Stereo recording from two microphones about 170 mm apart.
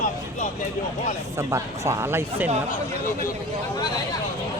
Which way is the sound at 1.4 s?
20° right (ahead or behind).